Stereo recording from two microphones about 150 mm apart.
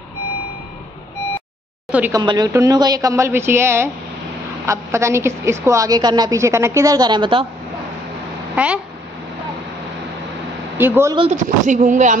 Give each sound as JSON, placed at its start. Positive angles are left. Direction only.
{"t": 1.9, "sound": "speech", "side_deg": -10}
{"t": 2.1, "sound": "a woman's voice", "side_deg": -25}
{"t": 8.5, "sound": "speech", "side_deg": -10}
{"t": 10.8, "sound": "speech", "side_deg": -15}
{"t": 11.4, "sound": "speech", "side_deg": -55}